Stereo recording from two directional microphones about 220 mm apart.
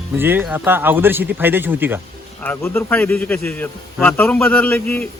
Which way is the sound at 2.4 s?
10° left (ahead or behind).